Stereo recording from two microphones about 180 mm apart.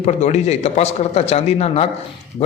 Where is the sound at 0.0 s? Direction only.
40° left (ahead or behind).